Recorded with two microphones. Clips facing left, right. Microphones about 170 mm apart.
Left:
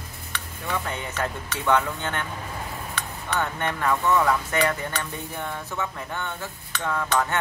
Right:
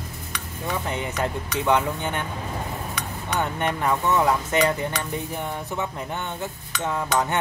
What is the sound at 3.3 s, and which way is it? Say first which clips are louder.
Speech: right 2 dB; 15° right (ahead or behind).